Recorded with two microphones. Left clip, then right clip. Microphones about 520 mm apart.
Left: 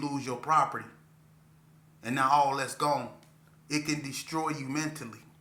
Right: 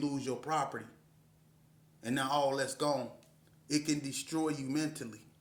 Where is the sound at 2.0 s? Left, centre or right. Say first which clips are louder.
Left 7 dB; right.